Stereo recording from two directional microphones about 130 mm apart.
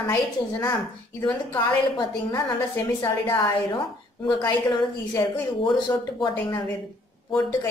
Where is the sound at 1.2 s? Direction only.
15° left (ahead or behind).